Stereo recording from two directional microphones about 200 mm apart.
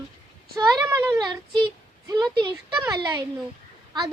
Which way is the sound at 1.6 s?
20° right (ahead or behind).